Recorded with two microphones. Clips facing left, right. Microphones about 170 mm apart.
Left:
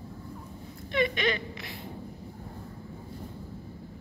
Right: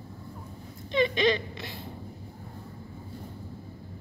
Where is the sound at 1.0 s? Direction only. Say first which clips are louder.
Right 3 dB; 30° right (ahead or behind).